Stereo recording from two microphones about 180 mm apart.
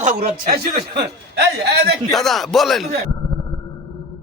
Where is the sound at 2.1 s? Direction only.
Centre (ahead or behind).